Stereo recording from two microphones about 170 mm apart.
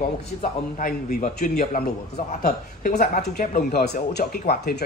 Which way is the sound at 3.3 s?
65° left (ahead or behind).